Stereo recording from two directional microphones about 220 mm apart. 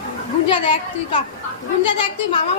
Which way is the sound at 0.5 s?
25° left (ahead or behind).